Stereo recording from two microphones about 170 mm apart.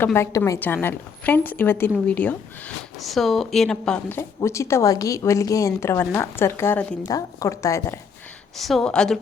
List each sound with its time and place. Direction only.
0.0 s a woman's voice: 15° left (ahead or behind)
8.5 s speech: centre (ahead or behind)